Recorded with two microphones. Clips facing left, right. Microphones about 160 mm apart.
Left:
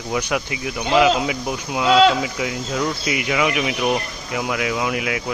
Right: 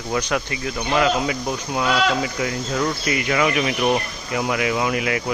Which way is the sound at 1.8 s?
25° left (ahead or behind).